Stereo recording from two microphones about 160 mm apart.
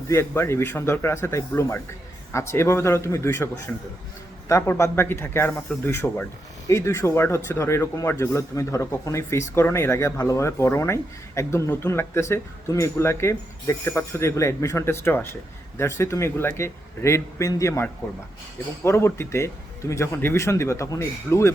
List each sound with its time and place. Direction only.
0.1 s speech: 15° left (ahead or behind)